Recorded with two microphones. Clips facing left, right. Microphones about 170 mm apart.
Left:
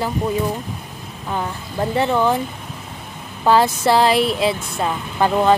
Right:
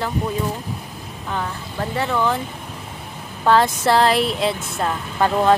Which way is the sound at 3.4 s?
5° left (ahead or behind).